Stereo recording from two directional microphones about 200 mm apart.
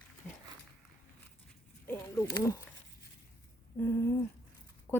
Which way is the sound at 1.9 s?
15° left (ahead or behind).